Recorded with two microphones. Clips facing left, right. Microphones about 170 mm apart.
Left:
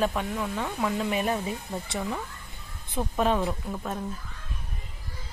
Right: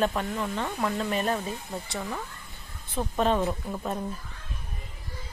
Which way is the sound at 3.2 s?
5° left (ahead or behind).